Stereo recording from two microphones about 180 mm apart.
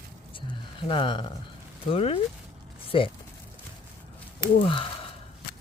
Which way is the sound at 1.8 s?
35° left (ahead or behind).